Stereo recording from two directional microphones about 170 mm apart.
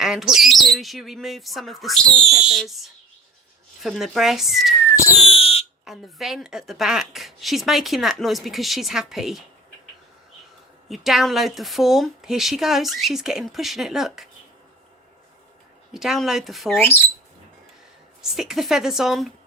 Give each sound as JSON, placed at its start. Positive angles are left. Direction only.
{"t": 0.0, "sound": "speech", "side_deg": 0}
{"t": 5.3, "sound": "a sound", "side_deg": 35}
{"t": 5.8, "sound": "speech", "side_deg": 0}
{"t": 10.8, "sound": "speech", "side_deg": 0}
{"t": 15.9, "sound": "speech", "side_deg": 0}
{"t": 16.7, "sound": "speech", "side_deg": 10}
{"t": 18.2, "sound": "speech", "side_deg": 0}